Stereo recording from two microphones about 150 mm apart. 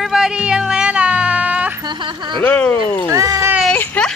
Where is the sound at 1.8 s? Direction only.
30° right (ahead or behind).